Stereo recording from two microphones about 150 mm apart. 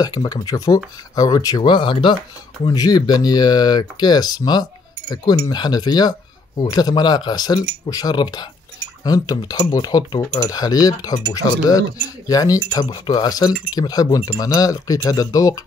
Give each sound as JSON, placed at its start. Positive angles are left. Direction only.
{"t": 0.0, "sound": "speech", "side_deg": 25}